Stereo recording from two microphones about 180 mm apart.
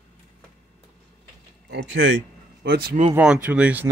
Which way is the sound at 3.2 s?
10° right (ahead or behind).